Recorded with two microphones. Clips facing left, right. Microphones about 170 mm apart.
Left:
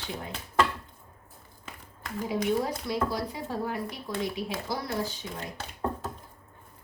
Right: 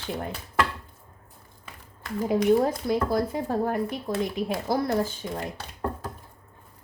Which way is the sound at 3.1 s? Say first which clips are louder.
Right 7 dB; 50° right (ahead or behind).